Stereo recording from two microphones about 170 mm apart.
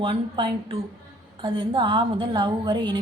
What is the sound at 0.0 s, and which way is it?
A woman's voice, 30° right (ahead or behind).